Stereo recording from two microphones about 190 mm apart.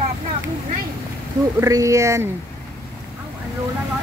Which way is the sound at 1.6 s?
15° right (ahead or behind).